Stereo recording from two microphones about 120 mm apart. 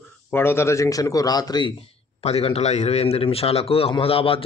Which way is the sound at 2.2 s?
55° left (ahead or behind).